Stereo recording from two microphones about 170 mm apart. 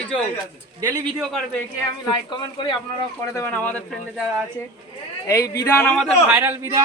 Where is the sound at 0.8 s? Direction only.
20° right (ahead or behind).